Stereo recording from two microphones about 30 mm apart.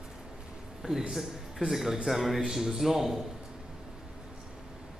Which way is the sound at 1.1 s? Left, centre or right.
Centre.